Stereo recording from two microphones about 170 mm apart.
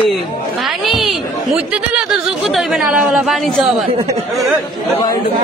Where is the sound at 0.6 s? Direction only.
Centre (ahead or behind).